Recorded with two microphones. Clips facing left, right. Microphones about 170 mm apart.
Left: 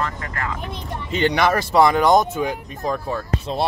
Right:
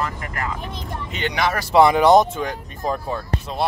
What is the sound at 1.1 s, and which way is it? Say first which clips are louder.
Speech: left 8 dB; 30° left (ahead or behind).